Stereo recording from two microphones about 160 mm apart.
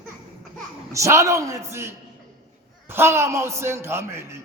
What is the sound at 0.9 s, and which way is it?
A man's voice, 20° right (ahead or behind).